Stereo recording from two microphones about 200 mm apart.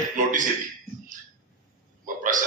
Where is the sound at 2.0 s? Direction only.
40° right (ahead or behind).